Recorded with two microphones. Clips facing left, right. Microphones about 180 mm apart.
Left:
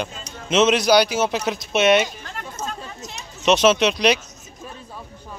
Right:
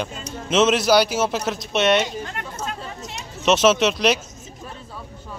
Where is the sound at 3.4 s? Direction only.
Centre (ahead or behind).